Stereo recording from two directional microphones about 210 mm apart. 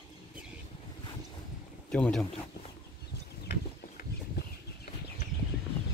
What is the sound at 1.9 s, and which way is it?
Speech, 5° left (ahead or behind).